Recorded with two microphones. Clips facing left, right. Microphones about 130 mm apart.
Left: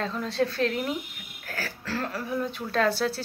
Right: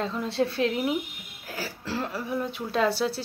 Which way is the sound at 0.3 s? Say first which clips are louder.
Even; 25° right (ahead or behind).